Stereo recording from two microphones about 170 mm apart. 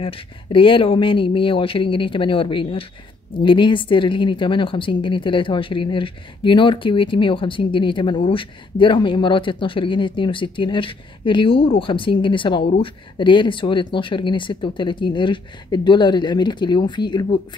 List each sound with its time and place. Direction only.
0.0 s a woman's voice: 30° left (ahead or behind)